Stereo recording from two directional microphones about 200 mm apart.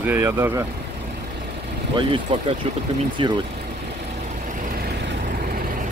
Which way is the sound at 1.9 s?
25° right (ahead or behind).